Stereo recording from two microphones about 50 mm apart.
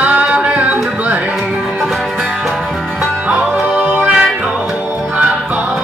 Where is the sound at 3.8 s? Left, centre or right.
Right.